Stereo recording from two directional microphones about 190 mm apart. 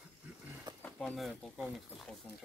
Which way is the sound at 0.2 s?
10° right (ahead or behind).